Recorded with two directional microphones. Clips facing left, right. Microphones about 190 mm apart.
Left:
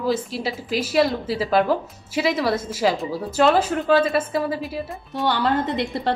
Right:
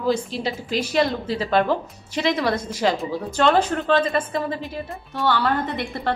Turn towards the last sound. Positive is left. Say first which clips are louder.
# left 3 dB
turn(degrees=20)  # may be behind; listen again after turning